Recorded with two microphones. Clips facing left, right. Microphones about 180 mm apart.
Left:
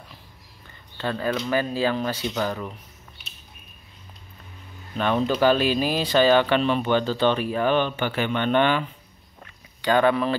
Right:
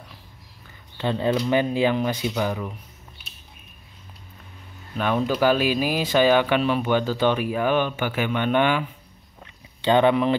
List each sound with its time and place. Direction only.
0.7 s speech: 15° right (ahead or behind)
4.9 s speech: 10° right (ahead or behind)
9.8 s speech: 20° right (ahead or behind)